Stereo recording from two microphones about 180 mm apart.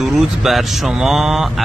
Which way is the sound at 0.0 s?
Centre (ahead or behind).